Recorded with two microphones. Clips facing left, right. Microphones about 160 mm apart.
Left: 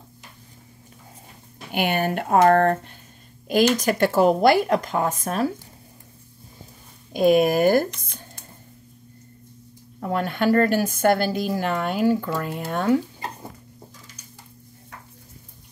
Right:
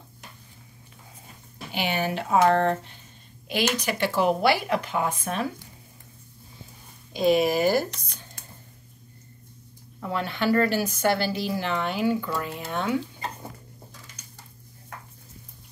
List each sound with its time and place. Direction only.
1.7 s speech: 55° left (ahead or behind)
7.1 s speech: 50° left (ahead or behind)
10.0 s speech: 50° left (ahead or behind)